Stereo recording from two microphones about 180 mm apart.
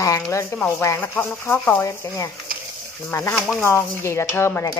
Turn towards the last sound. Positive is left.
turn(degrees=15)  # may be behind; listen again after turning